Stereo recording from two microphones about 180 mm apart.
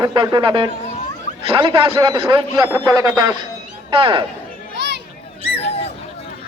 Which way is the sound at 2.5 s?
15° right (ahead or behind).